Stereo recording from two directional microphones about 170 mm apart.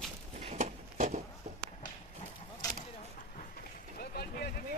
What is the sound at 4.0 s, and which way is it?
Vehicle, 65° left (ahead or behind).